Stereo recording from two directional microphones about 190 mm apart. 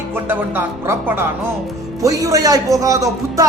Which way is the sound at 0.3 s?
10° right (ahead or behind).